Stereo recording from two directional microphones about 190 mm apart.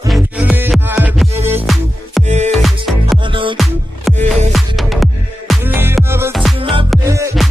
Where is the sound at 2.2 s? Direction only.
40° right (ahead or behind).